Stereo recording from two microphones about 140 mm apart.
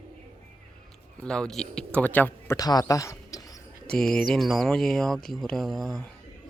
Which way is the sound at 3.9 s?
5° left (ahead or behind).